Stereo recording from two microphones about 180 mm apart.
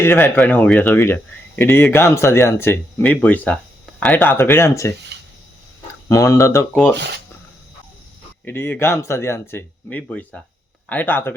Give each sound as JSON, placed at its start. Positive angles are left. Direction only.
{"t": 0.0, "sound": "speech", "side_deg": 10}
{"t": 6.1, "sound": "speech", "side_deg": 20}
{"t": 8.4, "sound": "speech", "side_deg": 10}